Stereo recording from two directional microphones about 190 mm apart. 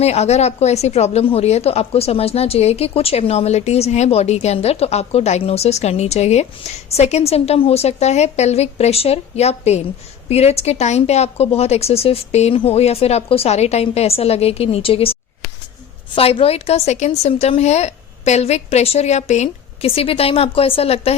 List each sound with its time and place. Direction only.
0.0 s speech: 35° left (ahead or behind)